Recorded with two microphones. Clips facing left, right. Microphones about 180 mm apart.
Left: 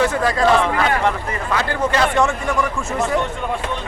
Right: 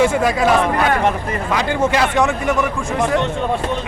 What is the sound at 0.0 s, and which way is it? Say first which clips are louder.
Speech: right 2 dB; 10° right (ahead or behind).